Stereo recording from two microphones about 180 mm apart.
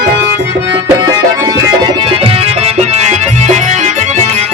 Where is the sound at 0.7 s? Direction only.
20° right (ahead or behind).